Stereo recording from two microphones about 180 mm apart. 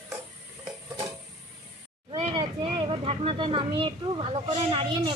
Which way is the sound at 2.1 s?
25° right (ahead or behind).